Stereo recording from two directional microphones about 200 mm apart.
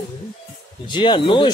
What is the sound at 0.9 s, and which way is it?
Speech, 25° left (ahead or behind).